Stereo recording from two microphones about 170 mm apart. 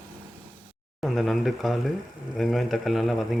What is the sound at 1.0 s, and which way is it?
Speech, centre (ahead or behind).